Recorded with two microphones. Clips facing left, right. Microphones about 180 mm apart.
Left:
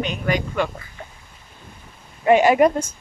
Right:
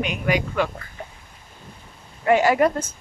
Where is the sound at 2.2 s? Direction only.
20° left (ahead or behind).